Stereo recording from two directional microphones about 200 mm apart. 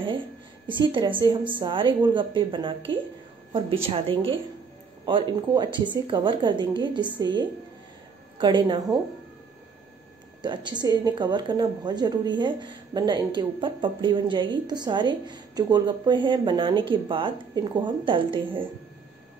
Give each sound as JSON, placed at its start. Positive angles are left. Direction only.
{"t": 0.7, "sound": "speech", "side_deg": -25}
{"t": 10.4, "sound": "speech", "side_deg": -20}